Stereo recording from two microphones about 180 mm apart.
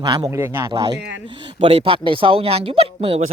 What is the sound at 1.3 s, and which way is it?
Speech, 30° right (ahead or behind).